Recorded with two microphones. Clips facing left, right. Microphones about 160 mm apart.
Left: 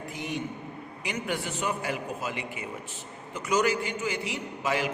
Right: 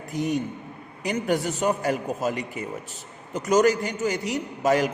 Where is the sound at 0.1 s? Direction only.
40° right (ahead or behind).